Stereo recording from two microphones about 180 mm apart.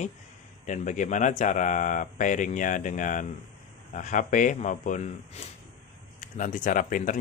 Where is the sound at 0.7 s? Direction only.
45° left (ahead or behind).